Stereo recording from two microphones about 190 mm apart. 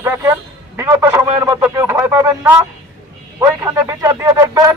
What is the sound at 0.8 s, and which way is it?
Radio, 15° right (ahead or behind).